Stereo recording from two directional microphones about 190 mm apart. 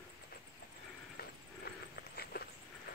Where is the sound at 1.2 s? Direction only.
50° left (ahead or behind).